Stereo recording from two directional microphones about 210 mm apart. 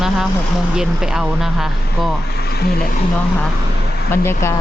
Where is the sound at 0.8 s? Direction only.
Centre (ahead or behind).